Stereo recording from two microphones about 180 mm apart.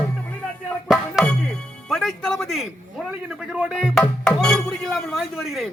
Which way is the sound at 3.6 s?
5° right (ahead or behind).